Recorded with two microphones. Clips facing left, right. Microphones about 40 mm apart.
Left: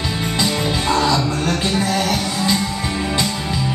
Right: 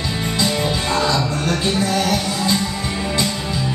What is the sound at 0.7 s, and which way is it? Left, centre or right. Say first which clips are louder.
Music: left 2 dB; left.